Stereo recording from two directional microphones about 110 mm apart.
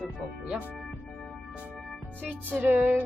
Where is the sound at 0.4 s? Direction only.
10° right (ahead or behind).